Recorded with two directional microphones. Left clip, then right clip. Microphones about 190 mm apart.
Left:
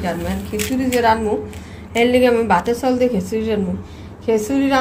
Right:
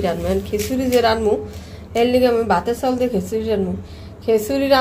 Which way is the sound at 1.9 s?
10° right (ahead or behind).